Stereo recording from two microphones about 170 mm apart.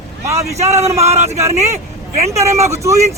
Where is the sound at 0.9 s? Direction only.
40° right (ahead or behind).